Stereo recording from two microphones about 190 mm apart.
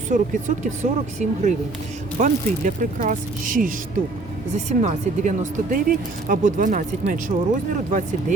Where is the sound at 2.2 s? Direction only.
45° right (ahead or behind).